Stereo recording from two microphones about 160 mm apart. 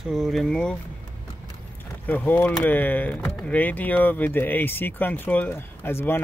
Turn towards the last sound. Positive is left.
turn(degrees=15)  # may be behind; listen again after turning